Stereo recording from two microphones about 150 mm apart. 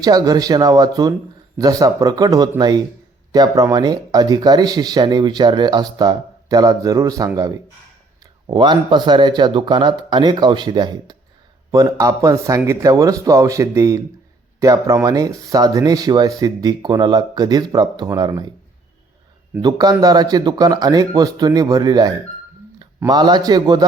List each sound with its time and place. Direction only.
0.0 s speech: 25° right (ahead or behind)
19.6 s speech: 25° right (ahead or behind)